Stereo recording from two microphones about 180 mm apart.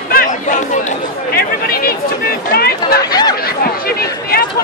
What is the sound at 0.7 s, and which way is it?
Chatter, 50° left (ahead or behind).